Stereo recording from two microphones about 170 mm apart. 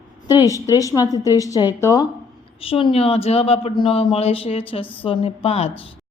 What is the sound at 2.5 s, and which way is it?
Speech, 35° left (ahead or behind).